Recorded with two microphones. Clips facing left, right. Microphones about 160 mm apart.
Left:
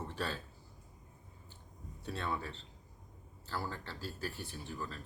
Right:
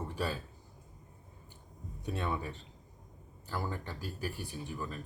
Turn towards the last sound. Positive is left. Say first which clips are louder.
# right 3 dB
turn(degrees=-15)  # may be behind; listen again after turning